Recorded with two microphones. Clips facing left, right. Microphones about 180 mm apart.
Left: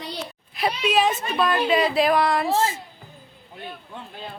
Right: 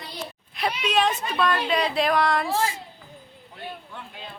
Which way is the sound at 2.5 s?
25° left (ahead or behind).